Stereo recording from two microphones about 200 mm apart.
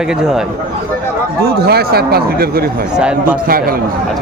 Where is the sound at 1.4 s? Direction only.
50° right (ahead or behind).